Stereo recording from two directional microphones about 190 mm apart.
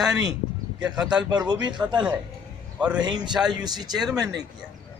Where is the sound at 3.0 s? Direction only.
20° right (ahead or behind).